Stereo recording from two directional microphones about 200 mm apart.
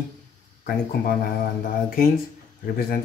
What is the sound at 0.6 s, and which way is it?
Speech, 50° left (ahead or behind).